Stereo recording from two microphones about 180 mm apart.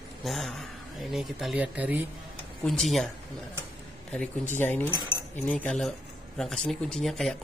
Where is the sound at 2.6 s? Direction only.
Centre (ahead or behind).